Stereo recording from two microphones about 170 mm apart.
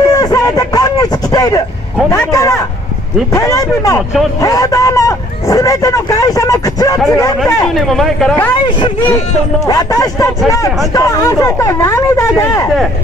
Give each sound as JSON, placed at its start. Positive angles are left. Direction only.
{"t": 0.1, "sound": "a sound", "side_deg": 20}
{"t": 2.3, "sound": "speech", "side_deg": 20}
{"t": 7.6, "sound": "speech", "side_deg": 0}
{"t": 9.7, "sound": "speech", "side_deg": 20}